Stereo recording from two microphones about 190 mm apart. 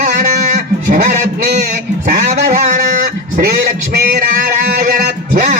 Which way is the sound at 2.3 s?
40° right (ahead or behind).